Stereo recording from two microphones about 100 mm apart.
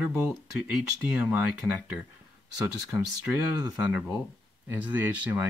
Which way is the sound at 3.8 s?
15° right (ahead or behind).